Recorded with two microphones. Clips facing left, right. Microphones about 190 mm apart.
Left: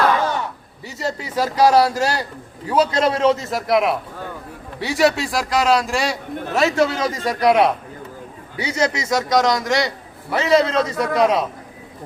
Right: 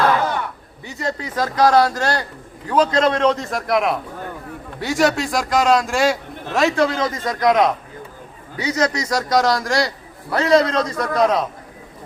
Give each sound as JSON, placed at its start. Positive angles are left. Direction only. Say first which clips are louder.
{"t": 0.9, "sound": "a man's voice", "louder": "even", "side_deg": 5}
{"t": 8.6, "sound": "a man's voice", "louder": "right 1 dB", "side_deg": 25}
{"t": 9.0, "sound": "a man's voice", "louder": "left 2 dB", "side_deg": 0}